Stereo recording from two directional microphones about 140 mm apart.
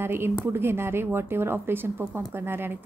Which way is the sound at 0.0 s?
15° right (ahead or behind).